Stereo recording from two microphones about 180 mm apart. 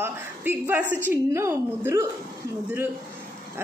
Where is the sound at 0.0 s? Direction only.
10° right (ahead or behind).